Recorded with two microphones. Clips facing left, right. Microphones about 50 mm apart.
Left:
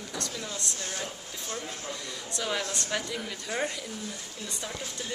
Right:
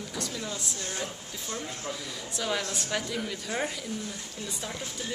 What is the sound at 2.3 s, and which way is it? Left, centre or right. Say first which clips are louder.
A man's voice: even; centre.